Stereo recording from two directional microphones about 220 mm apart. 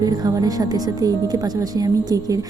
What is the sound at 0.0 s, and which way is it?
Speech, 15° right (ahead or behind).